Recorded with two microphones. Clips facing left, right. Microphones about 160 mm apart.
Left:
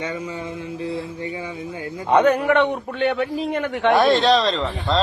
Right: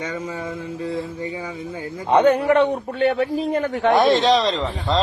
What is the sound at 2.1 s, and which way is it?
A man's voice, 30° right (ahead or behind).